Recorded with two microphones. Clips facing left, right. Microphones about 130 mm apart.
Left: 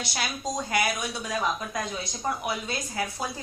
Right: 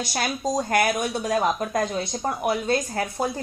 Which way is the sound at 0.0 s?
45° right (ahead or behind).